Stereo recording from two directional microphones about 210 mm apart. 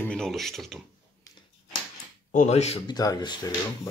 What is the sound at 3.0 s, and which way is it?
Speech, 20° left (ahead or behind).